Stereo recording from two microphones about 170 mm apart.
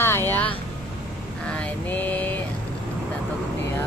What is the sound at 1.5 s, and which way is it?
Mantra, 10° left (ahead or behind).